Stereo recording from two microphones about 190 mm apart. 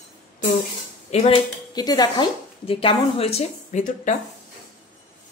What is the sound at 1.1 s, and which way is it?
Speech, 30° left (ahead or behind).